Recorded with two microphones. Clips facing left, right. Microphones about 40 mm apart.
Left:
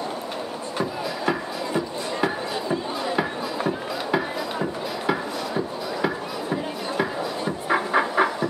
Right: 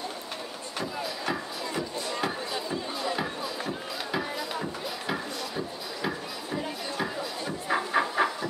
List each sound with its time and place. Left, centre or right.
3.2 s music: left
7.7 s train: left